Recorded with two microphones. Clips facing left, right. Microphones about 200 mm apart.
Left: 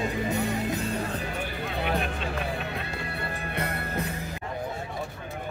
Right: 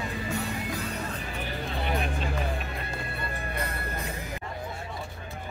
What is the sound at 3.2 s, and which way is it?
Music, 65° left (ahead or behind).